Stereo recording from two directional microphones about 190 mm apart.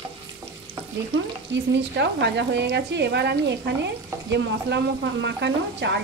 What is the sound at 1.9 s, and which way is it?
Speech, 65° right (ahead or behind).